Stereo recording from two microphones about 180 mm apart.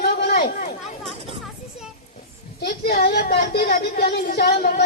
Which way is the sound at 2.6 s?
60° left (ahead or behind).